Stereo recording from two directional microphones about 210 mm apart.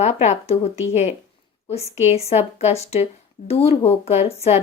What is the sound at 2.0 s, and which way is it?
A woman's voice, 30° left (ahead or behind).